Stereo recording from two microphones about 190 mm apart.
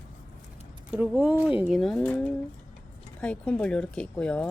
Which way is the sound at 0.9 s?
5° right (ahead or behind).